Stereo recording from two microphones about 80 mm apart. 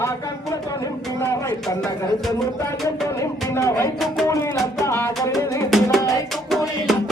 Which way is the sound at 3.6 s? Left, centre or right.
Left.